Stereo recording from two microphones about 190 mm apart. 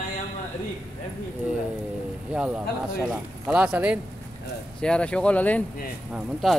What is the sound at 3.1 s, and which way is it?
Speech, 5° right (ahead or behind).